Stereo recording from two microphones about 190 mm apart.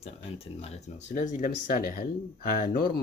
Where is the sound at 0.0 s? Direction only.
35° left (ahead or behind).